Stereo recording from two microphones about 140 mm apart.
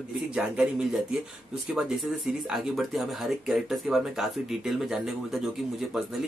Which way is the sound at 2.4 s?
Centre (ahead or behind).